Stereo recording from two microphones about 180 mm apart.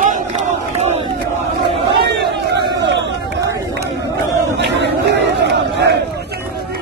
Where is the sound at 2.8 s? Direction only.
80° right.